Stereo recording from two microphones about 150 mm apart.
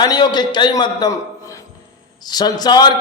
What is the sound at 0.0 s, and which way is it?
A man's voice, 30° left (ahead or behind).